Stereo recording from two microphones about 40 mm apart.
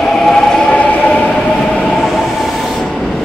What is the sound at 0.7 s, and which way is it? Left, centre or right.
Train, left.